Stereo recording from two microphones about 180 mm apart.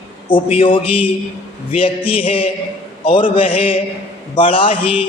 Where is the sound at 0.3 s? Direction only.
30° left (ahead or behind).